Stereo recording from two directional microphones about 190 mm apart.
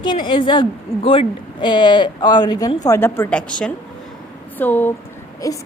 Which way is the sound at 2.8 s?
15° left (ahead or behind).